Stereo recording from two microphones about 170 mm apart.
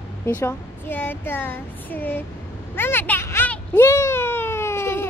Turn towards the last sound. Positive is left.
turn(degrees=15)  # may be behind; listen again after turning